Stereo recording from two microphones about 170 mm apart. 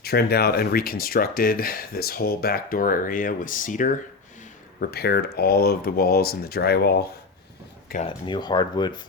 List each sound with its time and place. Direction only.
0.0 s speech: 65° left (ahead or behind)
4.8 s speech: 70° left (ahead or behind)
8.0 s speech: 30° left (ahead or behind)